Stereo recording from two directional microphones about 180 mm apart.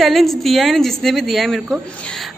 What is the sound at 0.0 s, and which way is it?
A woman's voice, centre (ahead or behind).